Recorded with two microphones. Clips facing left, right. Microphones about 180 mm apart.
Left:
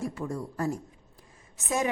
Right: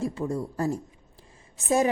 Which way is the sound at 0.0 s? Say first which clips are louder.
Right 4 dB; 25° right (ahead or behind).